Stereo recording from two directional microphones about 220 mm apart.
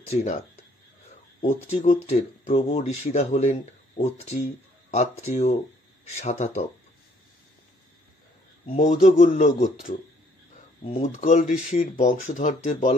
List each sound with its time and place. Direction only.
0.1 s speech: 30° left (ahead or behind)
1.4 s speech: 30° left (ahead or behind)
8.6 s speech: 35° left (ahead or behind)